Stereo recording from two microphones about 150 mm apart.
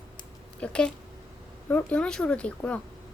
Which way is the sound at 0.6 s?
5° left (ahead or behind).